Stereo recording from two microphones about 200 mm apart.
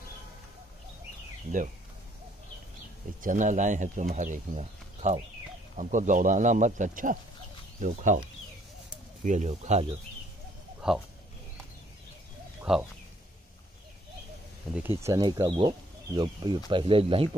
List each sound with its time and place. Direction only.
3.2 s speech: 40° right (ahead or behind)
9.2 s speech: 35° right (ahead or behind)
10.8 s speech: 5° right (ahead or behind)
12.7 s speech: 5° right (ahead or behind)
14.8 s speech: 15° right (ahead or behind); by 17.3 s 30° right (ahead or behind)